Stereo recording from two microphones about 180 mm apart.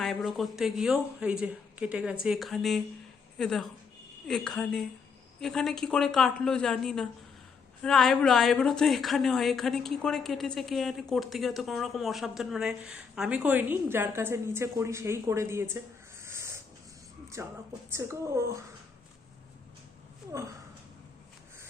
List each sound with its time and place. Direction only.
0.0 s speech: centre (ahead or behind)
16.2 s a sound: 15° right (ahead or behind)
17.4 s a woman's voice: 15° right (ahead or behind)